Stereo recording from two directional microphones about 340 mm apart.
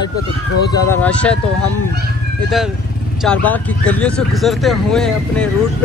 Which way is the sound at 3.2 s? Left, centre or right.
Centre.